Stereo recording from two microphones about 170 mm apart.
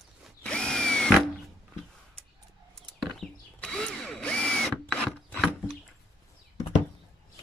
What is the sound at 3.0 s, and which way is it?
Drill, 5° left (ahead or behind).